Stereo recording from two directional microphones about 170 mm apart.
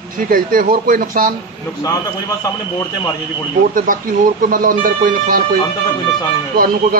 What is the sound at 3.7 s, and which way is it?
Speech, 55° right (ahead or behind).